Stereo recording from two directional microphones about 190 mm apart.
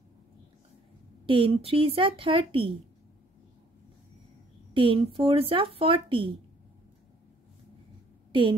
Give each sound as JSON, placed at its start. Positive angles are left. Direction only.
{"t": 1.2, "sound": "speech", "side_deg": -30}
{"t": 4.7, "sound": "speech", "side_deg": -30}
{"t": 8.3, "sound": "a woman's voice", "side_deg": -25}